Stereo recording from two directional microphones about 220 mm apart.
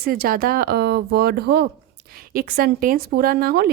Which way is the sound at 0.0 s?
40° right (ahead or behind).